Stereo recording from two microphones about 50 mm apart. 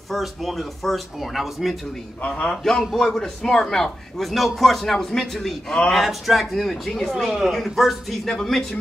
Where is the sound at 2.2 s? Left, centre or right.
Left.